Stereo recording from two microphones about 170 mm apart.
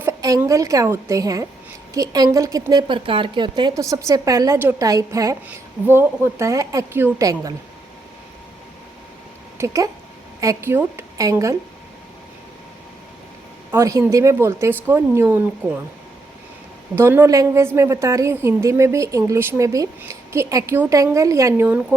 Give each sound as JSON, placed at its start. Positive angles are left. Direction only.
{"t": 0.0, "sound": "a woman's voice", "side_deg": -15}
{"t": 9.6, "sound": "a woman's voice", "side_deg": -20}
{"t": 13.7, "sound": "a woman's voice", "side_deg": -15}
{"t": 16.9, "sound": "a woman's voice", "side_deg": -15}